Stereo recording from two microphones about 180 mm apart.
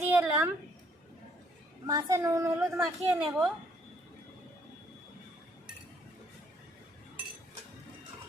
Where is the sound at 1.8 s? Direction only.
20° right (ahead or behind).